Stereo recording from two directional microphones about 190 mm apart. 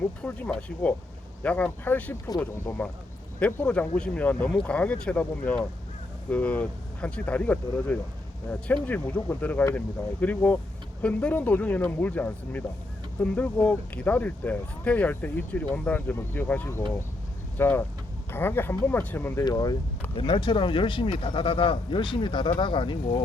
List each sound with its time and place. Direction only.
0.0 s speech: 10° left (ahead or behind); by 23.2 s 25° left (ahead or behind)